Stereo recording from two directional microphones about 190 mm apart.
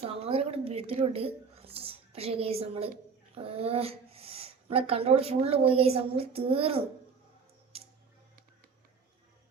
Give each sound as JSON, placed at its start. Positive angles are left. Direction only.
{"t": 0.0, "sound": "a woman's voice", "side_deg": -30}